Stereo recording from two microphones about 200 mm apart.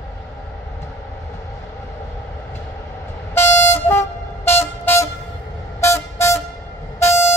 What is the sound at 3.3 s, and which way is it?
Vehicle, 10° left (ahead or behind).